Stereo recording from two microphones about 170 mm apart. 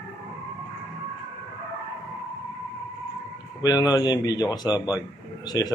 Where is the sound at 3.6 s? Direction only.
20° left (ahead or behind).